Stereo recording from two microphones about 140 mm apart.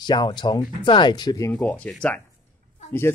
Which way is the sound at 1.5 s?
10° left (ahead or behind).